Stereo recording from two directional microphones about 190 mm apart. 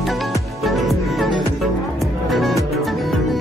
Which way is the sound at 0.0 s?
Centre (ahead or behind).